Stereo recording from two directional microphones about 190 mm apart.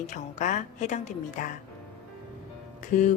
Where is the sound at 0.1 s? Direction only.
40° left (ahead or behind).